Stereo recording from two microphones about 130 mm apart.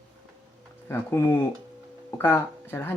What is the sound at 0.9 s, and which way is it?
Speech, 15° left (ahead or behind).